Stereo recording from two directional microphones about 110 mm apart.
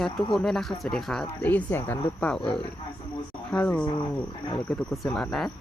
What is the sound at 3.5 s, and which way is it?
A woman's voice, 10° left (ahead or behind).